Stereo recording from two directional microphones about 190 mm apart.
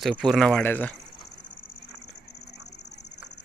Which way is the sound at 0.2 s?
Centre (ahead or behind).